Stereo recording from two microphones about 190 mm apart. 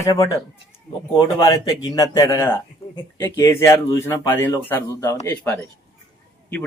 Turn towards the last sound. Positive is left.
turn(degrees=15)  # may be behind; listen again after turning